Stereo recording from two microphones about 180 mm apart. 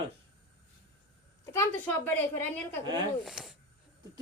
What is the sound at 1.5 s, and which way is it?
A woman's voice, 10° left (ahead or behind).